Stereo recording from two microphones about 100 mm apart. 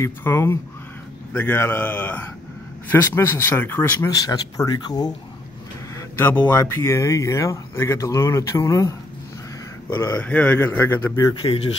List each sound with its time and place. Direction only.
0.0 s speech: 25° left (ahead or behind)
4.0 s speech: 40° left (ahead or behind)
5.9 s speech: 20° left (ahead or behind)
6.6 s speech: 30° left (ahead or behind)
10.1 s speech: 15° left (ahead or behind)
11.4 s speech: 70° left (ahead or behind)